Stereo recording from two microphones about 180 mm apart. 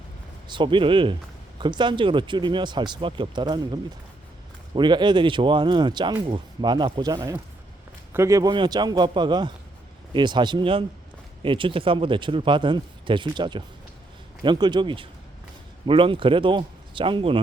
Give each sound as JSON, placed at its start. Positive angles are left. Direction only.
{"t": 0.4, "sound": "speech", "side_deg": -25}